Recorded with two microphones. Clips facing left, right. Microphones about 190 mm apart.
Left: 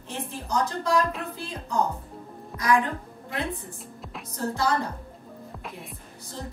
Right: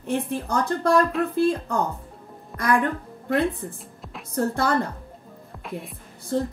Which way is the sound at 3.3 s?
Centre (ahead or behind).